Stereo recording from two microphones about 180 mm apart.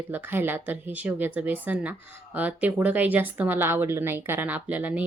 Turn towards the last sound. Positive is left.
turn(degrees=-10)  # may be behind; listen again after turning